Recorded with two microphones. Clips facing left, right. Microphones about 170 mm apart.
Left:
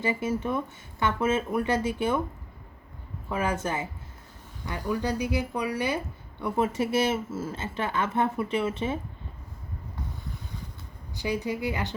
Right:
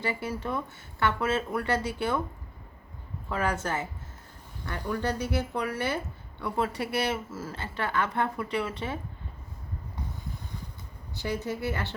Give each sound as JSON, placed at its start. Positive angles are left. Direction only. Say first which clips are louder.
{"t": 0.0, "sound": "speech", "louder": "left 4 dB", "side_deg": 20}
{"t": 3.2, "sound": "speech", "louder": "left 1 dB", "side_deg": 15}
{"t": 11.1, "sound": "speech", "louder": "left 2 dB", "side_deg": 15}